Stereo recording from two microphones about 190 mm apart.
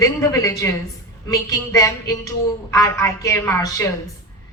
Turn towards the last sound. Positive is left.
turn(degrees=15)  # may be behind; listen again after turning